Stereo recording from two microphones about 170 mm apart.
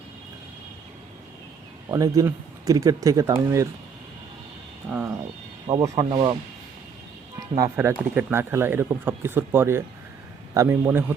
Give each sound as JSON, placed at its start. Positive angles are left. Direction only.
{"t": 1.9, "sound": "speech", "side_deg": -20}
{"t": 4.9, "sound": "speech", "side_deg": -10}
{"t": 6.1, "sound": "speech", "side_deg": -30}
{"t": 7.3, "sound": "speech", "side_deg": -20}